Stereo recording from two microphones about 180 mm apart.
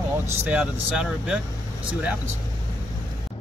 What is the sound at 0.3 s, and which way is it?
Speech, 10° right (ahead or behind).